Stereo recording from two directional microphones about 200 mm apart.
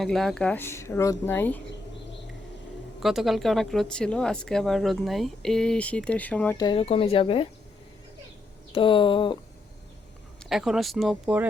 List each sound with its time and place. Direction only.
0.0 s speech: centre (ahead or behind)
3.0 s speech: centre (ahead or behind)
6.6 s speech: 25° left (ahead or behind)
8.7 s speech: 25° left (ahead or behind)
10.5 s speech: centre (ahead or behind)